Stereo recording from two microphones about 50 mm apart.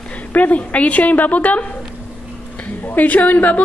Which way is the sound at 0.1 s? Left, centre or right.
Left.